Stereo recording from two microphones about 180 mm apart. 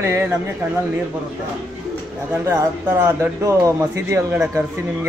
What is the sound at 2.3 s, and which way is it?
Speech, 15° right (ahead or behind).